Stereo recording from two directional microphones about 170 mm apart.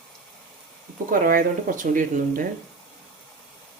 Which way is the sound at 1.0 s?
55° right (ahead or behind).